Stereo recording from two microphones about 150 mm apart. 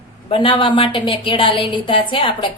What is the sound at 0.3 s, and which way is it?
A woman's voice, 35° left (ahead or behind).